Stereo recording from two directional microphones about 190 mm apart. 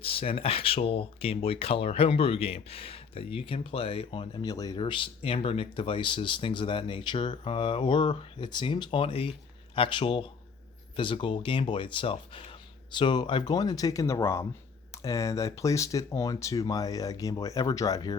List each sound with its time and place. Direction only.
0.0 s speech: 30° left (ahead or behind)